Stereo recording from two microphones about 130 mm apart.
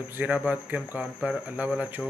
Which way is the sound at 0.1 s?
10° right (ahead or behind).